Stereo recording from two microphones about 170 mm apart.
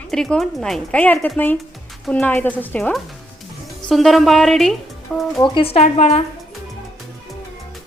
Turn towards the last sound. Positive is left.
turn(degrees=40)  # may be behind; listen again after turning